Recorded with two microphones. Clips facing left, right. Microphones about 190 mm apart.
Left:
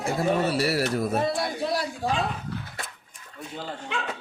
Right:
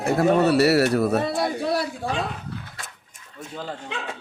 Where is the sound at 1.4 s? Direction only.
60° right (ahead or behind).